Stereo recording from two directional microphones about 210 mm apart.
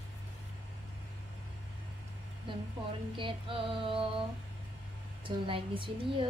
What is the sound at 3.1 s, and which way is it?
A woman's voice, 25° right (ahead or behind).